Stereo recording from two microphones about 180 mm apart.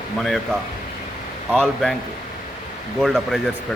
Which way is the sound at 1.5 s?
5° left (ahead or behind).